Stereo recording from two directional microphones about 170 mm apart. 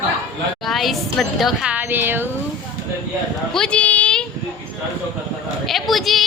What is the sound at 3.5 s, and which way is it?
Speech, 5° left (ahead or behind).